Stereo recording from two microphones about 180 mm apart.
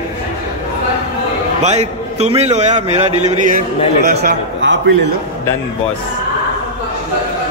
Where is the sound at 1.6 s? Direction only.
35° right (ahead or behind); by 4.9 s 75° right (ahead or behind).